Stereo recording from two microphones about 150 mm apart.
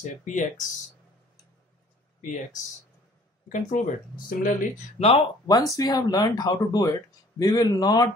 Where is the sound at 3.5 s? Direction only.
60° left (ahead or behind).